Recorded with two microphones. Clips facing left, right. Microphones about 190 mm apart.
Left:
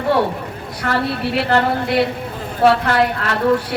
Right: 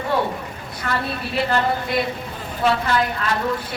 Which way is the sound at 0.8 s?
70° left (ahead or behind).